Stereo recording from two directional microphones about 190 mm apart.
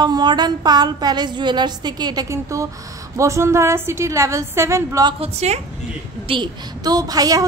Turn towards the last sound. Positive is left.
turn(degrees=-20)  # may be behind; listen again after turning